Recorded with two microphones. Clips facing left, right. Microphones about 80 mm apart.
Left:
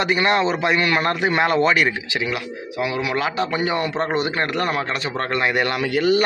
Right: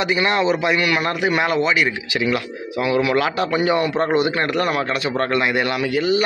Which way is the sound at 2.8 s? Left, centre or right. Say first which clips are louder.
Right 4 dB; centre.